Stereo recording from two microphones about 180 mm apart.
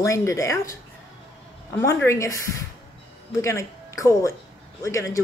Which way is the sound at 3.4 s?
15° left (ahead or behind).